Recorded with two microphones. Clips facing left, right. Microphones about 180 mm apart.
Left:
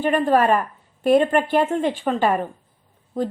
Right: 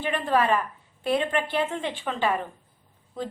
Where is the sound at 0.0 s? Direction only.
45° left (ahead or behind).